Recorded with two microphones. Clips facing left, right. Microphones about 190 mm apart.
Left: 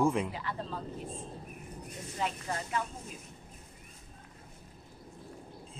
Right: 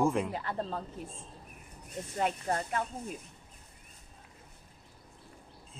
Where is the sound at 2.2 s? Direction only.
50° right (ahead or behind).